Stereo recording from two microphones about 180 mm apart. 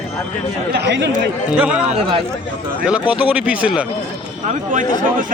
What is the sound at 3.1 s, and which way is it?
Speech, 10° right (ahead or behind).